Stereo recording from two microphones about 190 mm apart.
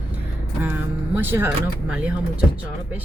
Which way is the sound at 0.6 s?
10° right (ahead or behind).